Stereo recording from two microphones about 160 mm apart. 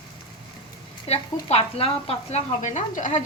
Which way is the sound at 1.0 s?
40° left (ahead or behind).